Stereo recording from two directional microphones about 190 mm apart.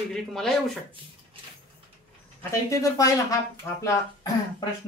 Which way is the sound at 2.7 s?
15° left (ahead or behind).